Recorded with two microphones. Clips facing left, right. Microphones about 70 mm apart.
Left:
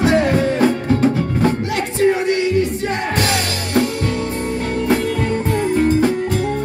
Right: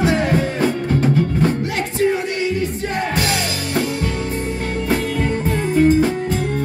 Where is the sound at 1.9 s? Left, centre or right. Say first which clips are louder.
Left 4 dB; left.